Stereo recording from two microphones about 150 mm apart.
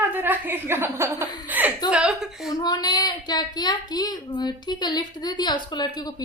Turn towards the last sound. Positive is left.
turn(degrees=30)  # may be behind; listen again after turning